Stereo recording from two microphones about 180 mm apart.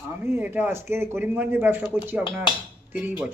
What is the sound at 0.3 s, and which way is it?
A man's voice, 10° right (ahead or behind).